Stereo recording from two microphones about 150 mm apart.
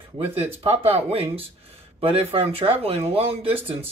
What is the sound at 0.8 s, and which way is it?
Speech, 40° right (ahead or behind).